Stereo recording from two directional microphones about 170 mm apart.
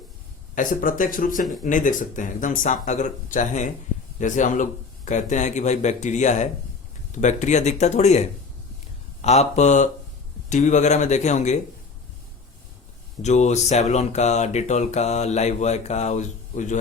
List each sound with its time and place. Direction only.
0.5 s a man's voice: 50° left (ahead or behind)
13.2 s speech: 40° left (ahead or behind)